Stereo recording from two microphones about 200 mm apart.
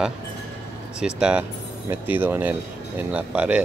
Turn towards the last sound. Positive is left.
turn(degrees=-5)  # may be behind; listen again after turning